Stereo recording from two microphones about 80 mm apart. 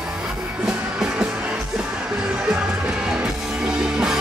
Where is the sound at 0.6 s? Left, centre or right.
Centre.